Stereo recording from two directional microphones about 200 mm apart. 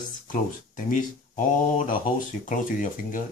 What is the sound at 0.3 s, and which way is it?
Speech, 40° left (ahead or behind).